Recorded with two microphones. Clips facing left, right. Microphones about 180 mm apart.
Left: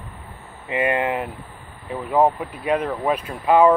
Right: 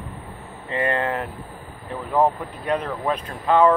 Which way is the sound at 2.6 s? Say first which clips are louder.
Left 3 dB; 5° left (ahead or behind).